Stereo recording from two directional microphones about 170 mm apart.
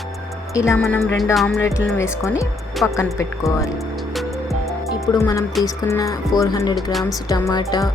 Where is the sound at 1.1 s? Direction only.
Centre (ahead or behind).